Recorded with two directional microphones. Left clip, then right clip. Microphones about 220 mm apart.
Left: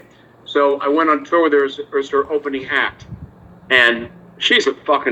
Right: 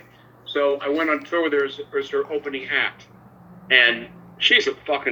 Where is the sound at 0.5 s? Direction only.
15° left (ahead or behind).